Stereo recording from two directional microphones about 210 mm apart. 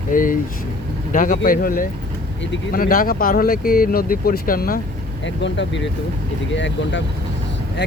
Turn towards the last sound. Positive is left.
turn(degrees=60)  # may be behind; listen again after turning